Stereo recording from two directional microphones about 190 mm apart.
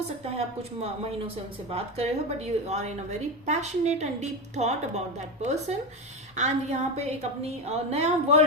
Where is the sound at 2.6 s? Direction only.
35° right (ahead or behind).